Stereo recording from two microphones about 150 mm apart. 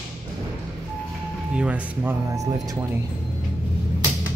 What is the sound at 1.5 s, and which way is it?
Speech, 10° right (ahead or behind).